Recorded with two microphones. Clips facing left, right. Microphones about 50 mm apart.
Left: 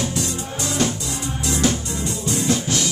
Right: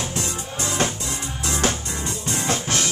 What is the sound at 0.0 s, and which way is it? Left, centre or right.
Music, right.